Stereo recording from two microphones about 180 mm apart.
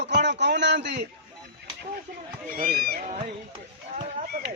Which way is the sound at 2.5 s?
55° right (ahead or behind).